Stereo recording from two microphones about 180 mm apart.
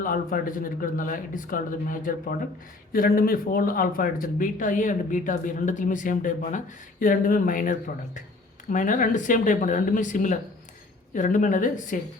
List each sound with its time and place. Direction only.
0.0 s speech: 50° left (ahead or behind)